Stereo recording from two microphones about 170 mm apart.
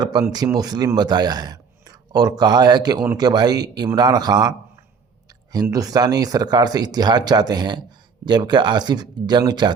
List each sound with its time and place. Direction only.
0.0 s speech: 25° right (ahead or behind)